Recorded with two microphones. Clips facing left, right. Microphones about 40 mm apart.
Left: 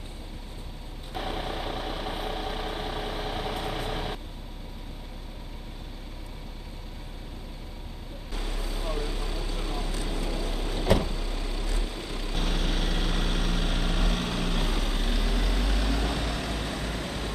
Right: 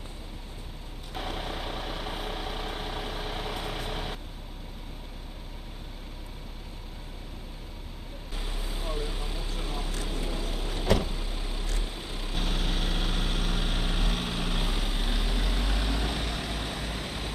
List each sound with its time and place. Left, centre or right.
1.1 s vehicle: centre
8.4 s vehicle: centre
11.1 s vehicle: centre
12.3 s vehicle: centre; by 17.3 s right